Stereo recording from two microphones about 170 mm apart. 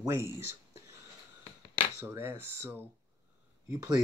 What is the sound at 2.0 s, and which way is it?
Speech, 15° right (ahead or behind).